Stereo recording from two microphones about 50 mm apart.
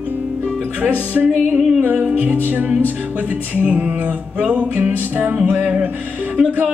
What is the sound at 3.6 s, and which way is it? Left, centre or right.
Music, right.